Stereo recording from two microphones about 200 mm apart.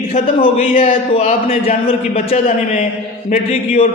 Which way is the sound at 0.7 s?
45° left (ahead or behind).